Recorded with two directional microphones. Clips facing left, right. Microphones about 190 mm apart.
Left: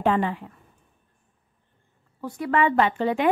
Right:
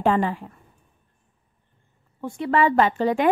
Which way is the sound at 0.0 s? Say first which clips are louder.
Right 2 dB; 40° right (ahead or behind).